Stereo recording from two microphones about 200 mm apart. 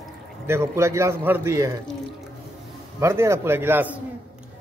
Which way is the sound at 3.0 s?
15° right (ahead or behind).